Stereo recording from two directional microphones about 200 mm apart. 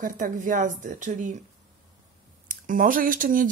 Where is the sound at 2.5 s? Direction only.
40° right (ahead or behind).